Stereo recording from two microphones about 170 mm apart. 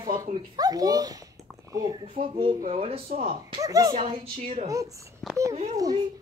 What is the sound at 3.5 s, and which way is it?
Speech, 20° right (ahead or behind).